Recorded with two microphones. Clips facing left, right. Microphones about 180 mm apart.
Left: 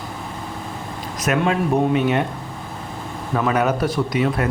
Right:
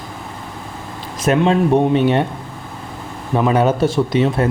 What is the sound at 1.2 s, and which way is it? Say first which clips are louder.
Speech: right 5 dB; 30° right (ahead or behind).